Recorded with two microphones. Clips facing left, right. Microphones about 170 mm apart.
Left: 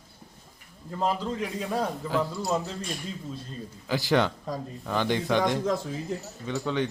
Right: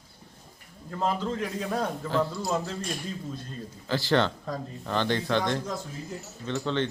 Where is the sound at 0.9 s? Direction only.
5° left (ahead or behind).